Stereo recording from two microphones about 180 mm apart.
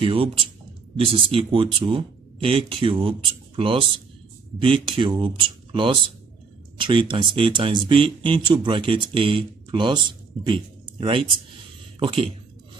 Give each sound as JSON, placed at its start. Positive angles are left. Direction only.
{"t": 0.0, "sound": "a man's voice", "side_deg": -30}